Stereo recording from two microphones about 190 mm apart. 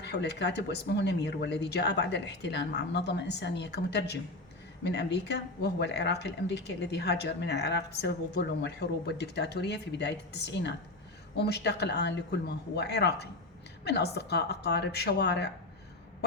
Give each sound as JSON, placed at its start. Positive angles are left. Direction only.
{"t": 0.0, "sound": "speech", "side_deg": 60}